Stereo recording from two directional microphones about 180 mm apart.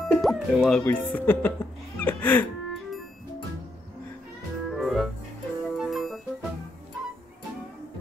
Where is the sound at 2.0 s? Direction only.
10° left (ahead or behind).